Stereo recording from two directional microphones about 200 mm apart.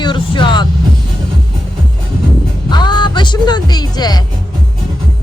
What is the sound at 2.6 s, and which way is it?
Music, 20° left (ahead or behind).